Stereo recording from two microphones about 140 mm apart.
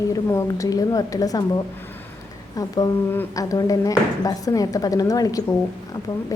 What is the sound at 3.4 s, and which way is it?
A woman's voice, 25° left (ahead or behind).